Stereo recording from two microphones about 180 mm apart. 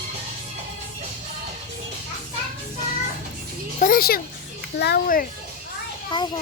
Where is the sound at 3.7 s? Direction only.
50° left (ahead or behind).